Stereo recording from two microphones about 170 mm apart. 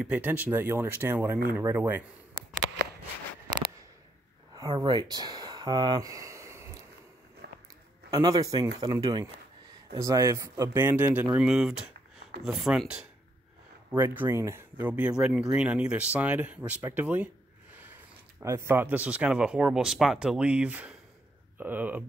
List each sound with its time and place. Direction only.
0.0 s speech: 10° right (ahead or behind)
4.6 s a sound: 25° right (ahead or behind)
7.4 s biting: 75° right (ahead or behind)
8.1 s speech: 20° right (ahead or behind)
18.4 s speech: 15° right (ahead or behind)